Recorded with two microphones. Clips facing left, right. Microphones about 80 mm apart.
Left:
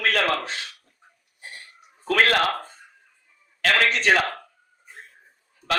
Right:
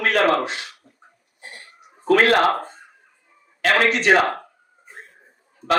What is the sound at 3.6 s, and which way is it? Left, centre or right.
Speech, right.